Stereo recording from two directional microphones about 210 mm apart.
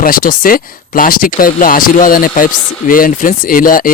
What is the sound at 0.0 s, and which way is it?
Speech, 45° left (ahead or behind).